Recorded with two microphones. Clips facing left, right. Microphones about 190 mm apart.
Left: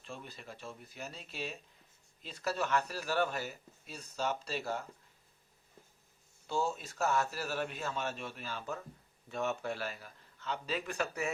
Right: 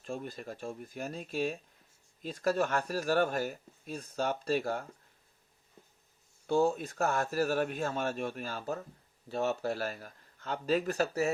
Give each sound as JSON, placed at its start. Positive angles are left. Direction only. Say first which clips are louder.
{"t": 0.0, "sound": "speech", "louder": "right 8 dB", "side_deg": -45}
{"t": 6.5, "sound": "speech", "louder": "right 7 dB", "side_deg": -55}